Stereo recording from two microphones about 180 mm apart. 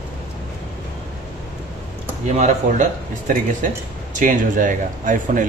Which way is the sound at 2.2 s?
40° right (ahead or behind).